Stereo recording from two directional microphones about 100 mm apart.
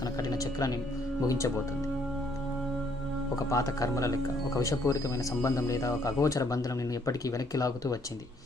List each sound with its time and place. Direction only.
0.2 s speech: 35° left (ahead or behind)
3.3 s speech: 35° left (ahead or behind)